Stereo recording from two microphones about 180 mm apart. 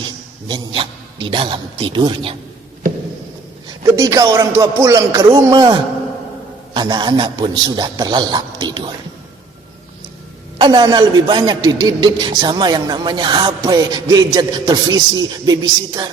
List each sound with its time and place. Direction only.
0.4 s a man's voice: 25° right (ahead or behind)
3.9 s a man's voice: 20° right (ahead or behind)
10.6 s a man's voice: 25° right (ahead or behind)